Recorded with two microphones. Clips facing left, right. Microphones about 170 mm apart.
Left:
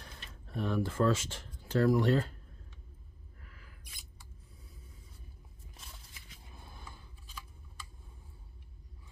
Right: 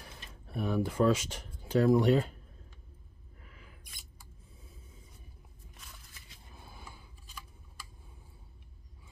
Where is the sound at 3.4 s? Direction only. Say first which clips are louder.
Right 3 dB; 20° right (ahead or behind).